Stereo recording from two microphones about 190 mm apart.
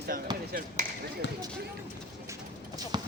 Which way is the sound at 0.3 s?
20° right (ahead or behind).